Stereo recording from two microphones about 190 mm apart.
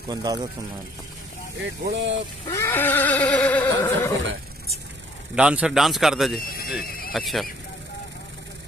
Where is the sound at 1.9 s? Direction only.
70° right (ahead or behind).